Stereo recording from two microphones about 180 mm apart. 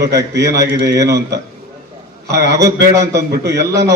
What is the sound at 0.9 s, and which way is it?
Speech, 20° right (ahead or behind).